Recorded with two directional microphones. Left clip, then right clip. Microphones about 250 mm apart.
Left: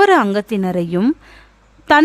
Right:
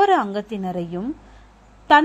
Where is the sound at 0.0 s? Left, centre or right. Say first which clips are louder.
Left 5 dB; left.